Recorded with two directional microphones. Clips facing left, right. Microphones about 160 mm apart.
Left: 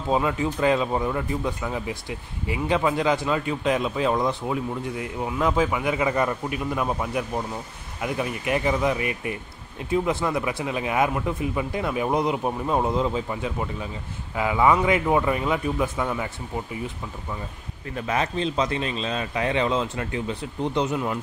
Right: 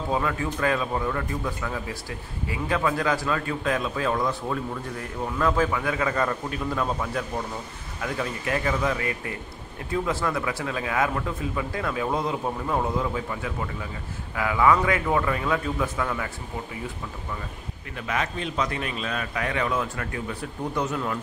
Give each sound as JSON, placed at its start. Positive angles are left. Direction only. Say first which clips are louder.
{"t": 0.1, "sound": "speech", "louder": "left 4 dB", "side_deg": 20}
{"t": 17.9, "sound": "speech", "louder": "left 4 dB", "side_deg": 30}